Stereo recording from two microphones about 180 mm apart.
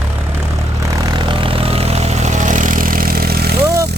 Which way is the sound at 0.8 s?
25° right (ahead or behind).